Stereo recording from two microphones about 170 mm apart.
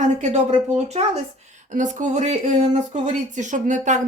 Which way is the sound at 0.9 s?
40° right (ahead or behind).